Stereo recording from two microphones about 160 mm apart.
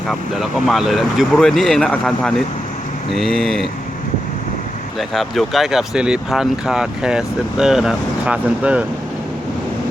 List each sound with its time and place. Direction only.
0.1 s speech: centre (ahead or behind)
4.9 s speech: centre (ahead or behind)